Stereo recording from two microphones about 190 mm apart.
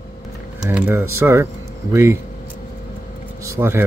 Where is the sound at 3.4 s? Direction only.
15° right (ahead or behind).